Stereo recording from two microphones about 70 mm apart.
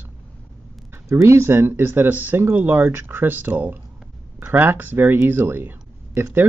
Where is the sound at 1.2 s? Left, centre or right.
Right.